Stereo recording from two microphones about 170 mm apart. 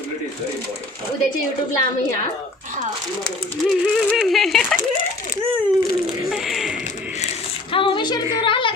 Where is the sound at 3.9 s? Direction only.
Centre (ahead or behind).